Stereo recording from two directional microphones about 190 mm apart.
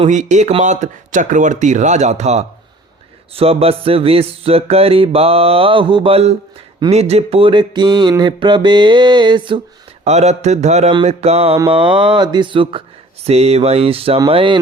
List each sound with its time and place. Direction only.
0.1 s music: 40° right (ahead or behind)
6.9 s mantra: 35° right (ahead or behind)
10.0 s music: 35° right (ahead or behind)
11.5 s mantra: 25° right (ahead or behind)
13.2 s music: 35° right (ahead or behind)
14.2 s mantra: 25° right (ahead or behind)